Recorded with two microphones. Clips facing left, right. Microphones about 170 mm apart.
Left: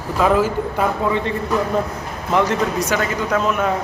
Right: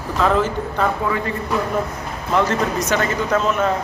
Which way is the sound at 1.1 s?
25° left (ahead or behind).